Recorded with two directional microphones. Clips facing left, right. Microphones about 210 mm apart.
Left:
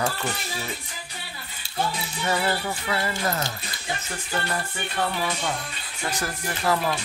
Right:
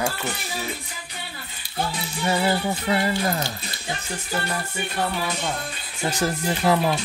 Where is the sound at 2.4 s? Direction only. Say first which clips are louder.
Right 4 dB; 20° right (ahead or behind).